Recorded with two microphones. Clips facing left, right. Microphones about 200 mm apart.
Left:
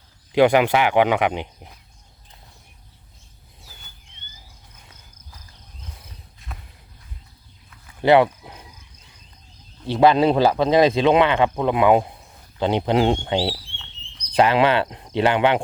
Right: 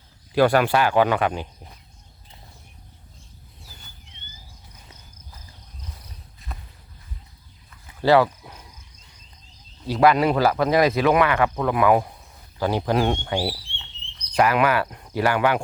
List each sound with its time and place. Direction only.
0.3 s speech: 20° left (ahead or behind)
6.5 s walk: centre (ahead or behind)
8.0 s a sound: 20° left (ahead or behind)
9.8 s speech: 25° left (ahead or behind)